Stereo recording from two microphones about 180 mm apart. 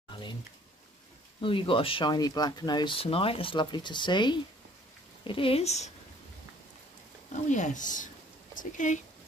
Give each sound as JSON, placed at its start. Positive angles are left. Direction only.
{"t": 0.1, "sound": "a sound", "side_deg": 25}
{"t": 1.4, "sound": "speech", "side_deg": 30}
{"t": 7.4, "sound": "speech", "side_deg": 40}